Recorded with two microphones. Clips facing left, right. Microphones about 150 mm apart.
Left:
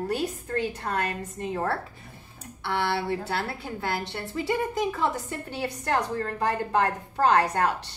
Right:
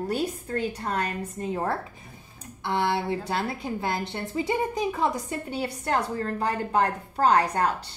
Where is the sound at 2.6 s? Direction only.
20° right (ahead or behind).